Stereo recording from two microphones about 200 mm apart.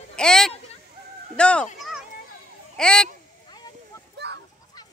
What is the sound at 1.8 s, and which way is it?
Children playing, centre (ahead or behind).